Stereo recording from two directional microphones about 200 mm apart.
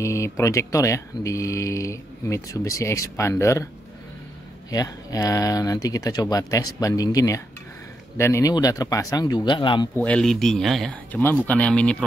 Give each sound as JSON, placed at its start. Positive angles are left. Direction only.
{"t": 0.0, "sound": "speech", "side_deg": 15}
{"t": 4.6, "sound": "speech", "side_deg": 20}
{"t": 9.9, "sound": "speech", "side_deg": 5}